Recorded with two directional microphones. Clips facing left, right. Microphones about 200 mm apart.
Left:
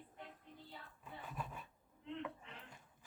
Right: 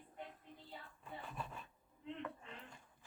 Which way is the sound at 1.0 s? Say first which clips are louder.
Even; 10° left (ahead or behind).